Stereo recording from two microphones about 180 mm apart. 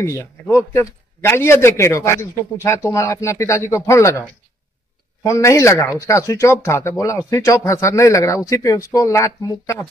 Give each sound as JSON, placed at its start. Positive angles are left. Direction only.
{"t": 0.0, "sound": "a man's voice", "side_deg": 15}
{"t": 5.2, "sound": "a man's voice", "side_deg": 15}